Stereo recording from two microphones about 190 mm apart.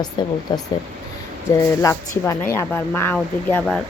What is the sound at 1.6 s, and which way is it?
Speech, 15° left (ahead or behind).